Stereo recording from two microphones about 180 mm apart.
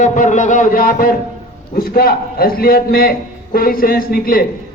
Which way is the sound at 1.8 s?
55° left (ahead or behind).